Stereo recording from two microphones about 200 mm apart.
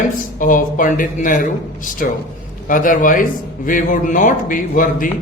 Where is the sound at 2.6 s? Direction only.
45° left (ahead or behind).